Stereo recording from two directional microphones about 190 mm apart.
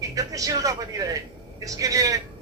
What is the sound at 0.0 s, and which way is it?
A man's voice, 15° right (ahead or behind).